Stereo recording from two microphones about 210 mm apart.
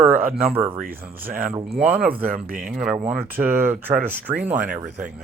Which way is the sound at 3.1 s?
10° right (ahead or behind).